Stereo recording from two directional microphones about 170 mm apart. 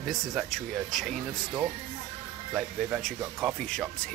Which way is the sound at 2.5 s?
5° right (ahead or behind).